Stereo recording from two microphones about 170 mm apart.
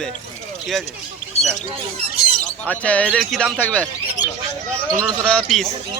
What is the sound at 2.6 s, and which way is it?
Speech, 10° left (ahead or behind).